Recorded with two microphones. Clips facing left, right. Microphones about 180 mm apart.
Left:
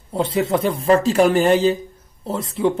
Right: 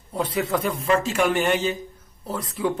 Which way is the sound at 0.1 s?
25° left (ahead or behind).